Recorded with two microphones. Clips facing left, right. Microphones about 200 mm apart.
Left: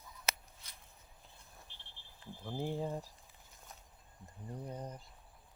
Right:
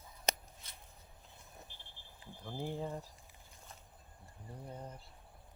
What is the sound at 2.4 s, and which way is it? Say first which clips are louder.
Speech: left 2 dB; 15° left (ahead or behind).